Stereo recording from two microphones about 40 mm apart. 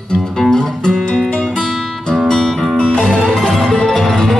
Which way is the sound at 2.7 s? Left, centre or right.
Left.